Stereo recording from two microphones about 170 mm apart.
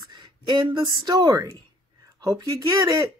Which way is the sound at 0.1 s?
25° right (ahead or behind).